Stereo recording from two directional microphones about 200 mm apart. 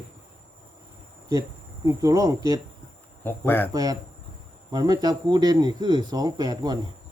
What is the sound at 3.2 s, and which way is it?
Speech, 10° left (ahead or behind).